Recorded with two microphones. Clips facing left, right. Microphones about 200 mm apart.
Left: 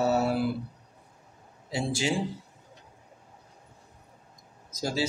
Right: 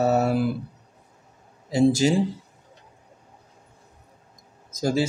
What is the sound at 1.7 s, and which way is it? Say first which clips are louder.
Speech: right 11 dB; 40° right (ahead or behind).